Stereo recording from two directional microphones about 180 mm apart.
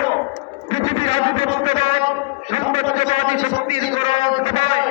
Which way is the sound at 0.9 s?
35° left (ahead or behind).